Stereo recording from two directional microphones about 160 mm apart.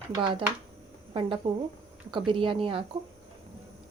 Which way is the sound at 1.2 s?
35° right (ahead or behind).